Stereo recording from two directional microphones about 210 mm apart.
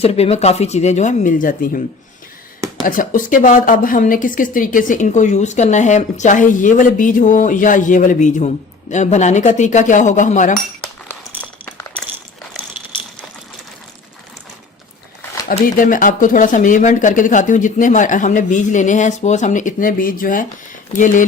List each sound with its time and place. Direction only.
0.0 s a woman's voice: 30° left (ahead or behind)
2.8 s a woman's voice: 40° left (ahead or behind)
11.1 s a sound: 10° left (ahead or behind)
15.6 s a woman's voice: 40° left (ahead or behind)